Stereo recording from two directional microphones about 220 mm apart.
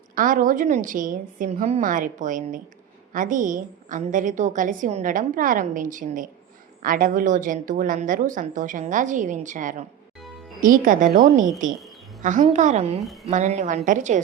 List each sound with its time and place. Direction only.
0.2 s a woman's voice: 40° right (ahead or behind)